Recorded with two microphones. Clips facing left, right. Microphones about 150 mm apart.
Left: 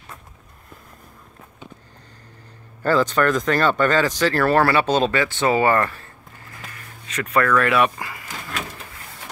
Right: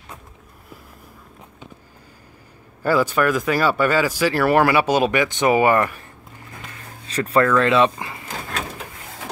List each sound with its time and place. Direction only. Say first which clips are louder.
2.8 s speech: even; 10° right (ahead or behind)
7.1 s speech: right 2 dB; 30° right (ahead or behind)